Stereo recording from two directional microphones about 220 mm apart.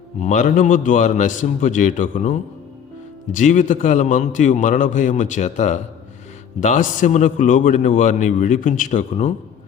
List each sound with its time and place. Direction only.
0.2 s a man's voice: 35° left (ahead or behind)